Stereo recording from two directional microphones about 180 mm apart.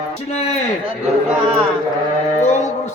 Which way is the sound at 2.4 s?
40° left (ahead or behind).